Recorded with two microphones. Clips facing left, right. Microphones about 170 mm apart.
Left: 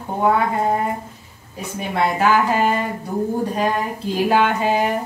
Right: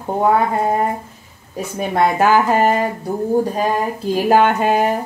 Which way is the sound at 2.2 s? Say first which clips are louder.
Right 2 dB; 45° right (ahead or behind).